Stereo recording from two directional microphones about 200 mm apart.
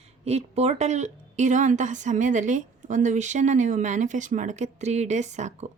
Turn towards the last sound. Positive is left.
turn(degrees=-35)  # may be behind; listen again after turning